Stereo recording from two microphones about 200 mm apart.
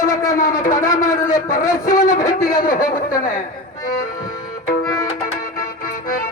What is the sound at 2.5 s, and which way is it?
Speech, 45° left (ahead or behind).